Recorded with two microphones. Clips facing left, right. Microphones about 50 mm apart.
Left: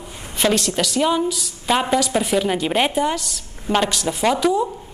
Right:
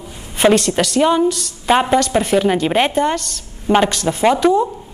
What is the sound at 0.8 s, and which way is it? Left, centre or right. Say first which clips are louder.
Speech: right 4 dB; centre.